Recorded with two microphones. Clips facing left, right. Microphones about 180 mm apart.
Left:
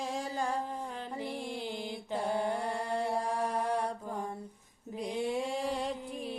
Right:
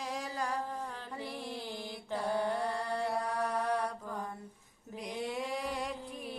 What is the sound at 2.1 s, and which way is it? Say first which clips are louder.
Mantra: left 1 dB; 25° left (ahead or behind).